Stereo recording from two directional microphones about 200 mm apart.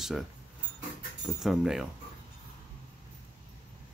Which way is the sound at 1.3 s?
Centre (ahead or behind).